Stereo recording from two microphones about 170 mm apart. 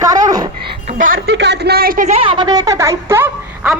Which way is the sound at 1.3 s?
85° right.